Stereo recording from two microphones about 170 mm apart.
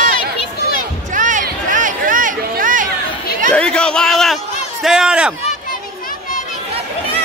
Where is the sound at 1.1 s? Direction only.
50° right (ahead or behind).